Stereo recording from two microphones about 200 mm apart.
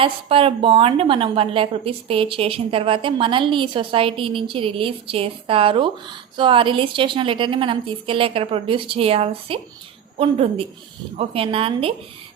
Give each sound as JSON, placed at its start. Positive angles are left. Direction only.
{"t": 0.0, "sound": "a woman's voice", "side_deg": -25}